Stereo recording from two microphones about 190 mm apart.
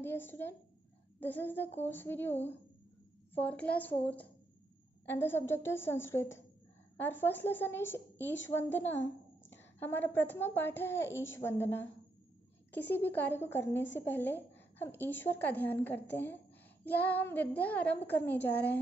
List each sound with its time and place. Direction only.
0.0 s a woman's voice: 10° left (ahead or behind)
11.1 s a child's voice: 80° left
11.3 s a woman's voice: 15° left (ahead or behind)